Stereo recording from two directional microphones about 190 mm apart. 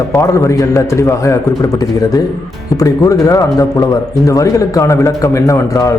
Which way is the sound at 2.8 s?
15° left (ahead or behind).